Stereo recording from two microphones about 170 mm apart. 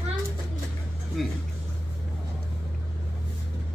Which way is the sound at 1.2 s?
Centre (ahead or behind).